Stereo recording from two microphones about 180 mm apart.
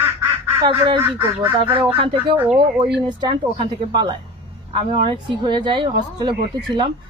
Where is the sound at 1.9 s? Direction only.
30° right (ahead or behind).